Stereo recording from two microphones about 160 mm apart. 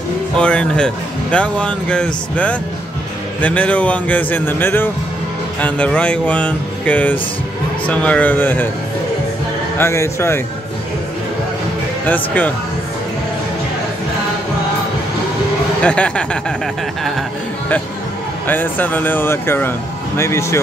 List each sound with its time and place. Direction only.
0.4 s speech: 5° left (ahead or behind)
9.8 s speech: 15° left (ahead or behind)
12.1 s speech: 10° left (ahead or behind)
15.8 s speech: 5° left (ahead or behind)
18.5 s speech: 10° left (ahead or behind)